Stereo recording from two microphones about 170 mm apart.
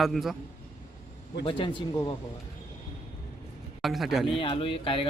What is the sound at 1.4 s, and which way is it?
Speech, 30° left (ahead or behind).